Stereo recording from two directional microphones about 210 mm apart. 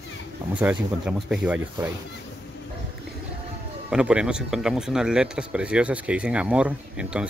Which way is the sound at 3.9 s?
5° right (ahead or behind).